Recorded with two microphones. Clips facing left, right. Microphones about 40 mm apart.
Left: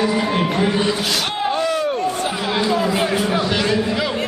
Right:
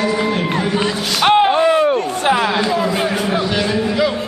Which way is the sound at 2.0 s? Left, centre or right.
Right.